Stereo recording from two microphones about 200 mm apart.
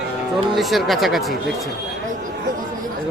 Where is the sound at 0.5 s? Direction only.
Centre (ahead or behind).